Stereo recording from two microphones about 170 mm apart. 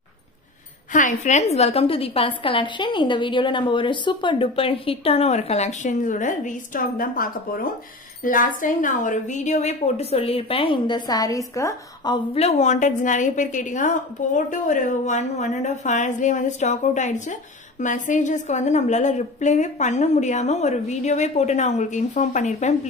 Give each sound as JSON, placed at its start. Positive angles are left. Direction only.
{"t": 0.9, "sound": "a woman's voice", "side_deg": 45}
{"t": 12.4, "sound": "a woman's voice", "side_deg": 40}